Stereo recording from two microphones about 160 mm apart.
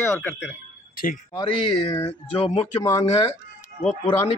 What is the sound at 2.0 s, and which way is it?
Speech, 35° left (ahead or behind).